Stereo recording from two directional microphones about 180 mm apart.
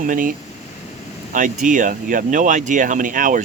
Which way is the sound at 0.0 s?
50° right (ahead or behind).